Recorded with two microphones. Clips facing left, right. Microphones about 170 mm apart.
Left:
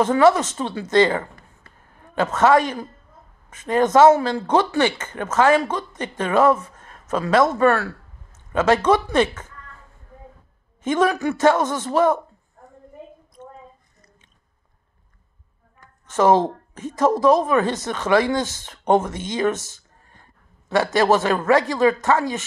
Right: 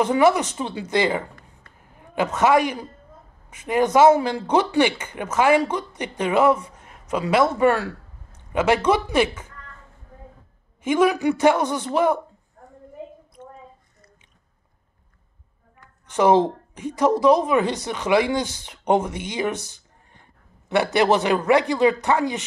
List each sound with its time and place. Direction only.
0.0 s a man's voice: 15° right (ahead or behind)
10.8 s speech: 10° right (ahead or behind)
16.1 s a woman's voice: 15° right (ahead or behind)